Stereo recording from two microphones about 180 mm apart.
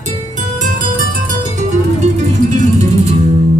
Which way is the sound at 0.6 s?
50° right (ahead or behind).